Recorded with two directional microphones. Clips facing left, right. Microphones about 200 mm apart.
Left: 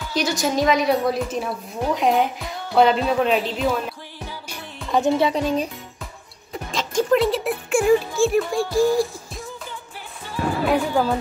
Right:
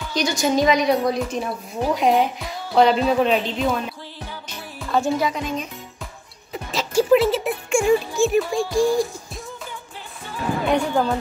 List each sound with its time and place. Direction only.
0.1 s a woman's voice: centre (ahead or behind)
4.9 s speech: 20° left (ahead or behind)
5.3 s speech: 35° left (ahead or behind)
6.5 s music: 5° right (ahead or behind)
8.2 s speech: centre (ahead or behind)
10.6 s a woman's voice: 5° left (ahead or behind)